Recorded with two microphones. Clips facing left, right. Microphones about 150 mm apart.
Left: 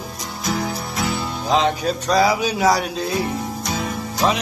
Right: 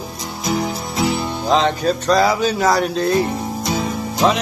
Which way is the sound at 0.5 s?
20° right (ahead or behind).